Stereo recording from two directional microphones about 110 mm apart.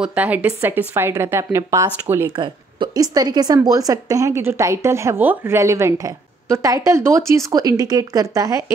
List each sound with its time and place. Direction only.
0.0 s speech: 15° right (ahead or behind)
2.3 s a woman's voice: 45° right (ahead or behind); by 8.7 s 30° right (ahead or behind)